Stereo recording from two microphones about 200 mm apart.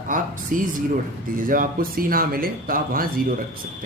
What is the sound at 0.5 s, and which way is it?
Speech, 40° right (ahead or behind).